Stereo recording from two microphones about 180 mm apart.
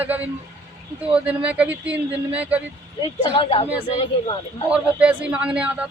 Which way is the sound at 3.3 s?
30° left (ahead or behind).